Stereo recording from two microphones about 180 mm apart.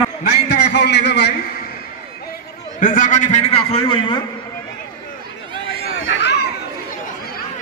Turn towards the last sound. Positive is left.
turn(degrees=70)  # may be behind; listen again after turning